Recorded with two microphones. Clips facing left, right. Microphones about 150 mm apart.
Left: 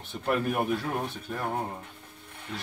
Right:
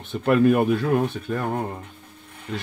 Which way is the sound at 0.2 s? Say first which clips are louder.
Right 10 dB; 90° right.